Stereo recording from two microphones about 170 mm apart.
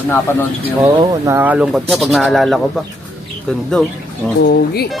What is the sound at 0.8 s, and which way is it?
Speech, 15° right (ahead or behind).